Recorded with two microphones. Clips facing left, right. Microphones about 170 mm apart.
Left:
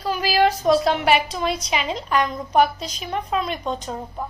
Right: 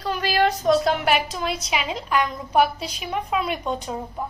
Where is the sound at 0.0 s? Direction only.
5° left (ahead or behind).